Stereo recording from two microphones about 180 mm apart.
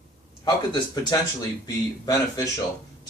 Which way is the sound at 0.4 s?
20° left (ahead or behind).